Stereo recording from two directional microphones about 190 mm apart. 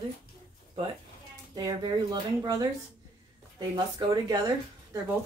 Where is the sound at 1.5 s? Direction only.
25° right (ahead or behind).